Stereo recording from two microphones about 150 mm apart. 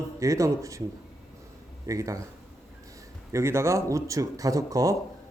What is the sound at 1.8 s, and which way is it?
Speech, 20° right (ahead or behind).